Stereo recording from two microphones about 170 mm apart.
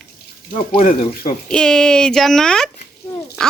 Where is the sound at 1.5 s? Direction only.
5° left (ahead or behind).